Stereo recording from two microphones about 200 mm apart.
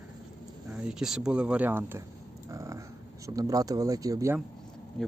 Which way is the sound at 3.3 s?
15° right (ahead or behind).